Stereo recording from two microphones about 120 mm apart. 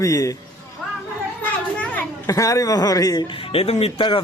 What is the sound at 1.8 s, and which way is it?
Children playing, 10° left (ahead or behind).